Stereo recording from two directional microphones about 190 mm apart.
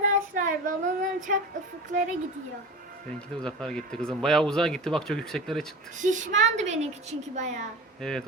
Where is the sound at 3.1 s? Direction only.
5° left (ahead or behind).